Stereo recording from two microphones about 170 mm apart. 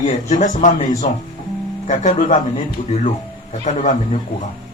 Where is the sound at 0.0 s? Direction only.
45° left (ahead or behind).